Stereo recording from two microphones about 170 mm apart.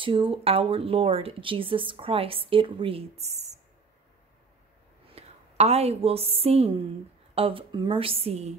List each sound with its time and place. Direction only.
0.0 s speech: 30° right (ahead or behind)
5.0 s a woman's voice: 35° right (ahead or behind)